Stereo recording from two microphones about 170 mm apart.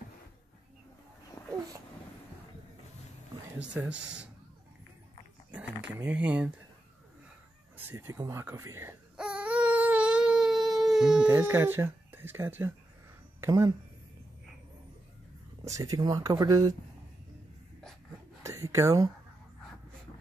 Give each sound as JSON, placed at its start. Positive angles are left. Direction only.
{"t": 3.5, "sound": "speech", "side_deg": -5}
{"t": 5.5, "sound": "a sound", "side_deg": -5}
{"t": 5.9, "sound": "speech", "side_deg": -10}
{"t": 7.7, "sound": "speech", "side_deg": -10}
{"t": 9.1, "sound": "baby cry", "side_deg": -5}
{"t": 13.4, "sound": "speech", "side_deg": -20}
{"t": 15.6, "sound": "speech", "side_deg": -20}
{"t": 18.4, "sound": "a sound", "side_deg": -20}